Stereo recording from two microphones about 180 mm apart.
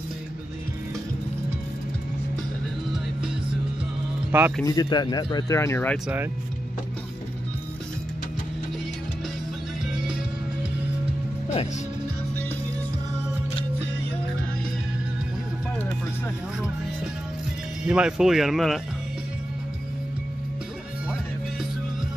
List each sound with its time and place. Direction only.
4.3 s a man's voice: 10° right (ahead or behind)
4.6 s speech: 20° left (ahead or behind)
17.8 s speech: 5° right (ahead or behind)